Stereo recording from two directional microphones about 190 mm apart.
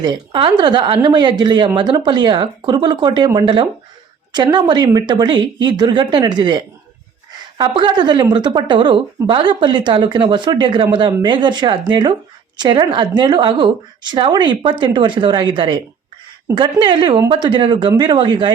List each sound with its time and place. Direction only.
0.0 s speech: 25° right (ahead or behind)
7.6 s speech: 25° right (ahead or behind)